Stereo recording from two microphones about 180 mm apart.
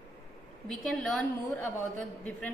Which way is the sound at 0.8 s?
Centre (ahead or behind).